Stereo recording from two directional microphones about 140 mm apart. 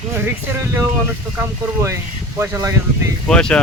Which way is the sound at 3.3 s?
5° left (ahead or behind).